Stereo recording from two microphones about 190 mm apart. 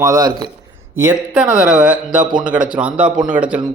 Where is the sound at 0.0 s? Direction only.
20° right (ahead or behind).